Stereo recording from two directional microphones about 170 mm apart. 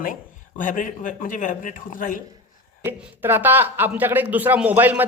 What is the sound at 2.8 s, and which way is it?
Speech, 10° right (ahead or behind).